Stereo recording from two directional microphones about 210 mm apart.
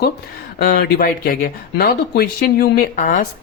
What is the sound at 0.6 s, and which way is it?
Speech, 50° left (ahead or behind).